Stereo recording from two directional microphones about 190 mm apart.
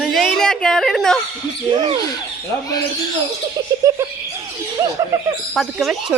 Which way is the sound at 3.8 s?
15° right (ahead or behind).